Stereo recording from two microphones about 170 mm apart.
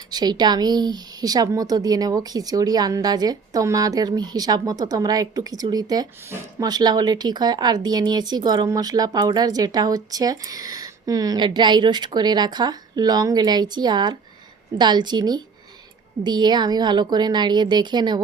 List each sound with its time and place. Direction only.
0.1 s speech: 25° right (ahead or behind)